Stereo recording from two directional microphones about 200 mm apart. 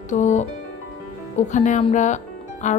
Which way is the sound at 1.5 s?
40° left (ahead or behind).